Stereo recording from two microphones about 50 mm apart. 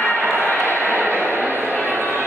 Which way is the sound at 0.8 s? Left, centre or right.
Right.